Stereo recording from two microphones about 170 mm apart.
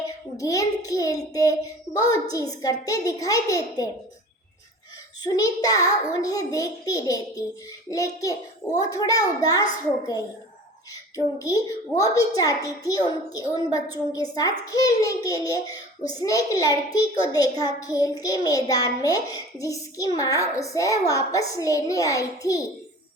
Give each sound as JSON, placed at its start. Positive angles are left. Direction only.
{"t": 0.3, "sound": "a child's voice", "side_deg": 20}
{"t": 5.2, "sound": "a child's voice", "side_deg": 20}
{"t": 11.3, "sound": "a child's voice", "side_deg": 20}